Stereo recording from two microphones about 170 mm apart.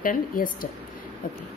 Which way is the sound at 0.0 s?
55° left (ahead or behind).